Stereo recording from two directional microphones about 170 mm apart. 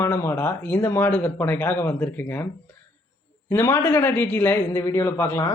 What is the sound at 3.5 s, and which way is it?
Speech, 15° left (ahead or behind).